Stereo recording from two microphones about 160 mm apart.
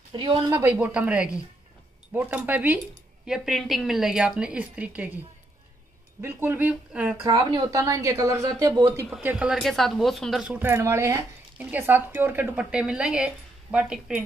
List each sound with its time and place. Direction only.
0.1 s speech: 30° right (ahead or behind)
0.5 s a woman's voice: 15° right (ahead or behind)
6.2 s speech: 15° right (ahead or behind)
7.2 s a woman's voice: 20° right (ahead or behind)
9.2 s speech: 10° right (ahead or behind)